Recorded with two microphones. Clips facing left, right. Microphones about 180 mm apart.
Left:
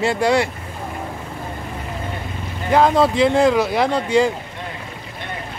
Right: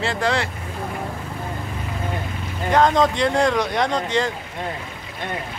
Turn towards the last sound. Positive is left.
turn(degrees=10)  # may be behind; listen again after turning